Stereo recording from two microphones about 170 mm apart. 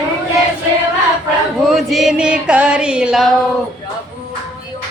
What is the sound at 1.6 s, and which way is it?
Speech, centre (ahead or behind).